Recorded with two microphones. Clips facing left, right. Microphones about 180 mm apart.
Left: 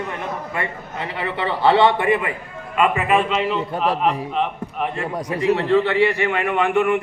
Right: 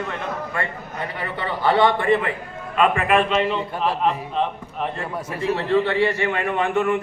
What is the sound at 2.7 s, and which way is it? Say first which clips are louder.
Speech: even; 5° left (ahead or behind).